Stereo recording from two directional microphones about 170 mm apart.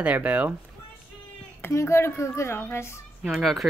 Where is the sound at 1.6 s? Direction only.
15° left (ahead or behind).